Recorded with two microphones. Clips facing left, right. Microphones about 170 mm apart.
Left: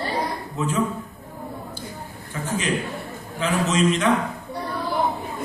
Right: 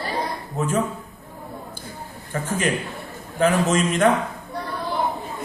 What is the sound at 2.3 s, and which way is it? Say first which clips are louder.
Speech: right 1 dB; 50° right (ahead or behind).